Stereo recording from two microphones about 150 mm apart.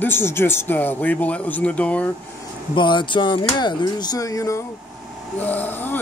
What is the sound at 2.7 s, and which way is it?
Speech, 30° left (ahead or behind).